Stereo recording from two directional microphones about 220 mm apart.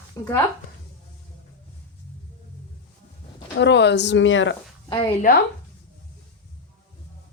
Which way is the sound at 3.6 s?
50° left (ahead or behind).